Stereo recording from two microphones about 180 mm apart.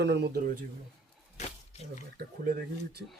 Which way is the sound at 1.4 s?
40° left (ahead or behind).